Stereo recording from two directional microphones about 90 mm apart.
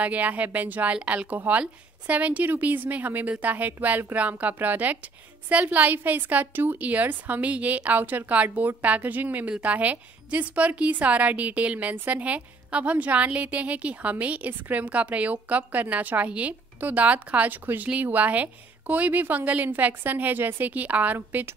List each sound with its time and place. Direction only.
0.0 s a woman's voice: 15° right (ahead or behind)